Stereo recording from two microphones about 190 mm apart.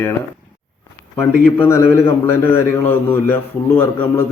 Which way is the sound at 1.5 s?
10° left (ahead or behind).